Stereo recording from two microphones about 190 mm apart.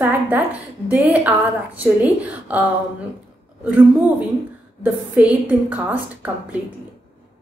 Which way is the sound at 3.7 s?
10° right (ahead or behind).